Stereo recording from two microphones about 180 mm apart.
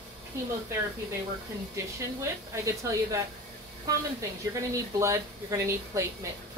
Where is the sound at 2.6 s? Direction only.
15° right (ahead or behind).